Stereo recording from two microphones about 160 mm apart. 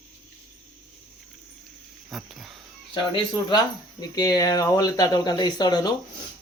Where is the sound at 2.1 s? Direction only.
Centre (ahead or behind).